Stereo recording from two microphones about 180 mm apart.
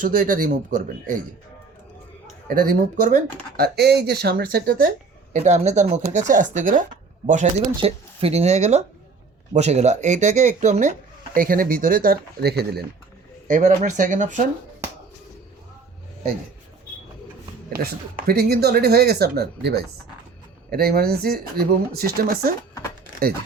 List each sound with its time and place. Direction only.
0.0 s speech: 50° right (ahead or behind)
2.5 s speech: 50° right (ahead or behind)
3.8 s speech: 65° right (ahead or behind)
5.3 s speech: 40° right (ahead or behind); by 12.8 s 65° right (ahead or behind)
13.5 s speech: 40° right (ahead or behind)
18.3 s speech: 60° right (ahead or behind)